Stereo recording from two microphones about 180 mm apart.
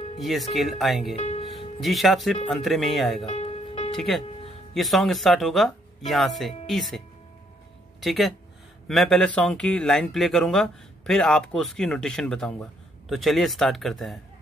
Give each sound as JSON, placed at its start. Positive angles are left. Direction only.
{"t": 0.2, "sound": "speech", "side_deg": 0}
{"t": 1.1, "sound": "speech", "side_deg": 35}
{"t": 1.8, "sound": "speech", "side_deg": 0}
{"t": 3.3, "sound": "music", "side_deg": 40}
{"t": 3.9, "sound": "speech", "side_deg": 0}
{"t": 8.0, "sound": "speech", "side_deg": 0}